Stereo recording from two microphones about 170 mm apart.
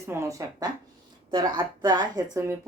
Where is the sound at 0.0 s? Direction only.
15° right (ahead or behind).